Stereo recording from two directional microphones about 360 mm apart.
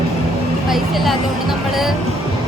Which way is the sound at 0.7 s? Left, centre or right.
Centre.